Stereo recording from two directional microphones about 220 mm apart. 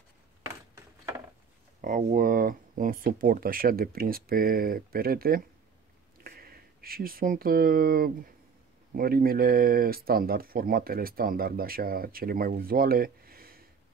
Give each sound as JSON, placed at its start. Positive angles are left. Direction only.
{"t": 1.8, "sound": "speech", "side_deg": -35}